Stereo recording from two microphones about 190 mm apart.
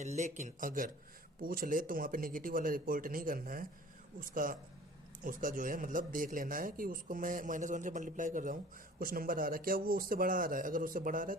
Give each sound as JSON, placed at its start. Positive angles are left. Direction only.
{"t": 0.0, "sound": "speech", "side_deg": -35}